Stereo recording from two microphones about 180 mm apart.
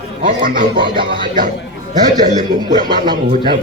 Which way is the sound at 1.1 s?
50° right (ahead or behind).